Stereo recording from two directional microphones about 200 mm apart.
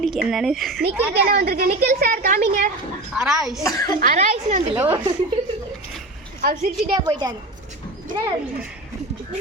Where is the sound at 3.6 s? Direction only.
15° left (ahead or behind).